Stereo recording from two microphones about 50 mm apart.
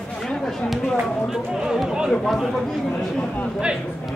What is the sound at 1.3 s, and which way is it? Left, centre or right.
Speech, centre.